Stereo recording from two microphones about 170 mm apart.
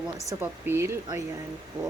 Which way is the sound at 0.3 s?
15° right (ahead or behind).